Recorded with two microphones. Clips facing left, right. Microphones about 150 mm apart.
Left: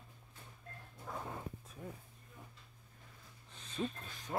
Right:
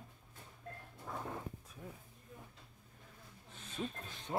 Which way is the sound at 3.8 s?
5° right (ahead or behind).